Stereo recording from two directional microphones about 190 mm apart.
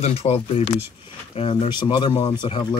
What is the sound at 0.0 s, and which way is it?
Speech, 35° left (ahead or behind).